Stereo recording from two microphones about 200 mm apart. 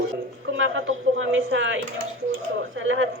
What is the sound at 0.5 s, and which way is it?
A man's voice, 75° right (ahead or behind).